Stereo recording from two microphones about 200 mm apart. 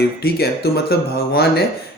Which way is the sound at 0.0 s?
50° left (ahead or behind).